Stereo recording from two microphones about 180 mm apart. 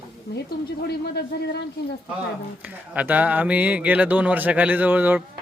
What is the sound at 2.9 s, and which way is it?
Speech, 10° right (ahead or behind).